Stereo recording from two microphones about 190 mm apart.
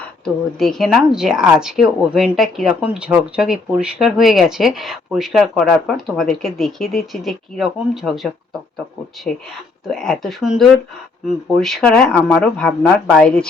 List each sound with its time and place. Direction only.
0.6 s speech: centre (ahead or behind)
9.8 s speech: centre (ahead or behind)